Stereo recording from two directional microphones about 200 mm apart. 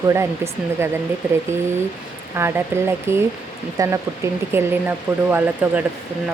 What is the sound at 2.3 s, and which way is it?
Speech, 10° right (ahead or behind).